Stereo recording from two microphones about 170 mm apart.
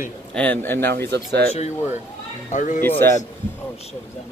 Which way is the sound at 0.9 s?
75° right (ahead or behind).